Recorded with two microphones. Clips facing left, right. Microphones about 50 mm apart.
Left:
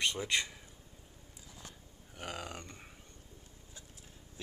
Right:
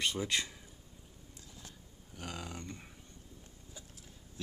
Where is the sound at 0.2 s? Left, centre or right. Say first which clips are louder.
Left 1 dB; centre.